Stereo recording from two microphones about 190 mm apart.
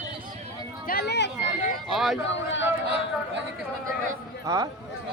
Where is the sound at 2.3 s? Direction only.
75° left (ahead or behind).